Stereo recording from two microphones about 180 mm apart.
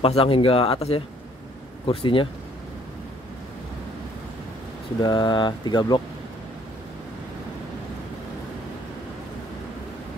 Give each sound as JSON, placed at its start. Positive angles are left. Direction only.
{"t": 0.0, "sound": "speech", "side_deg": 30}
{"t": 5.0, "sound": "speech", "side_deg": 25}